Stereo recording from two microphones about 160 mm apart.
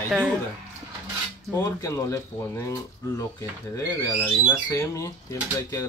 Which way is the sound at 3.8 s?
20° left (ahead or behind).